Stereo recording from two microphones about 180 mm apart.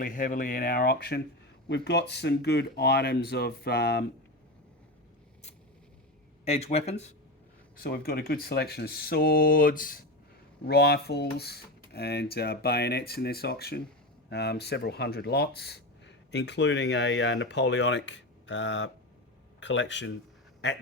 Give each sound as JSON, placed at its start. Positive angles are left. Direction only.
{"t": 0.0, "sound": "speech", "side_deg": 50}
{"t": 1.6, "sound": "speech", "side_deg": 70}
{"t": 6.4, "sound": "speech", "side_deg": 35}
{"t": 7.8, "sound": "speech", "side_deg": 60}
{"t": 10.7, "sound": "speech", "side_deg": 65}